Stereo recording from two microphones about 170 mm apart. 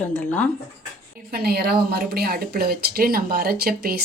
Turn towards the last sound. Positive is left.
turn(degrees=-60)  # may be behind; listen again after turning